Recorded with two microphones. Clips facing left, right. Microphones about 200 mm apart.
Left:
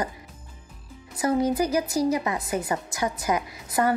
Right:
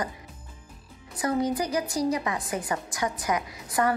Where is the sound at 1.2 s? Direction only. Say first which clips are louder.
Left 3 dB; 25° left (ahead or behind).